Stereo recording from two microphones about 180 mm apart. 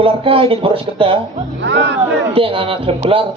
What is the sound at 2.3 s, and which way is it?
Speech, 30° right (ahead or behind).